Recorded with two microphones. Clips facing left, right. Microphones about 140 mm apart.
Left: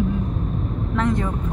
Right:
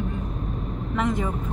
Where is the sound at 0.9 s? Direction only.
5° right (ahead or behind).